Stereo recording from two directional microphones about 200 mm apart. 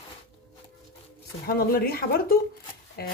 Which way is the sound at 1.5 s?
50° left (ahead or behind).